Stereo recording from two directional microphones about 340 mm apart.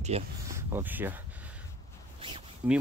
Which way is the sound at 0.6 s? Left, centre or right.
Centre.